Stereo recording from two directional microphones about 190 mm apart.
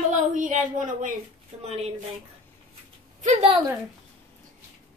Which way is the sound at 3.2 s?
40° right (ahead or behind).